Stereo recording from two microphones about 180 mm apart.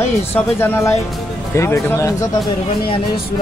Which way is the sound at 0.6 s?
10° left (ahead or behind).